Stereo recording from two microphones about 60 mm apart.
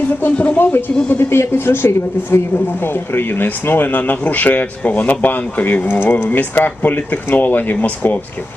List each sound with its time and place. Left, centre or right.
0.1 s speech: left